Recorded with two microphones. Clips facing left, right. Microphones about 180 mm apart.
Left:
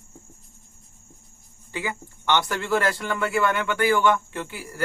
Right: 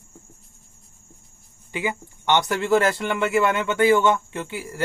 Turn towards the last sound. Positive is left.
turn(degrees=-20)  # may be behind; listen again after turning